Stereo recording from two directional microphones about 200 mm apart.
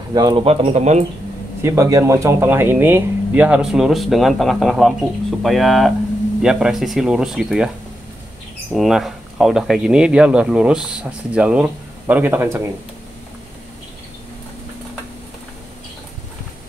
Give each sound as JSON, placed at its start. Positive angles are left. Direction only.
{"t": 0.1, "sound": "speech", "side_deg": -20}
{"t": 1.6, "sound": "speech", "side_deg": -15}
{"t": 8.7, "sound": "speech", "side_deg": 0}